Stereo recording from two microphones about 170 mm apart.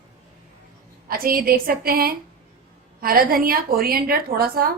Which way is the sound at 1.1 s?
60° right (ahead or behind).